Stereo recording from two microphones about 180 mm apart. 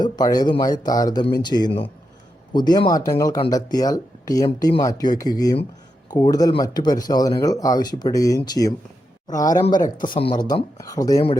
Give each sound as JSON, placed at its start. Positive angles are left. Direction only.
{"t": 0.0, "sound": "speech", "side_deg": 20}
{"t": 9.6, "sound": "speech", "side_deg": 45}
{"t": 10.0, "sound": "speech", "side_deg": 30}